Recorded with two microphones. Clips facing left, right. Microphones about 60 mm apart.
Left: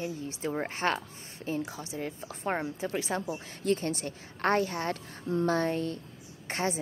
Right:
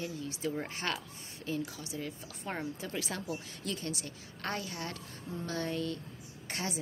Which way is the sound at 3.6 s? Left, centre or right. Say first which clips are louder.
Left 9 dB; left.